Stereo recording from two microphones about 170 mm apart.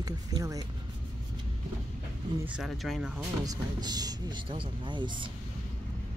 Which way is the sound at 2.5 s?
Centre (ahead or behind).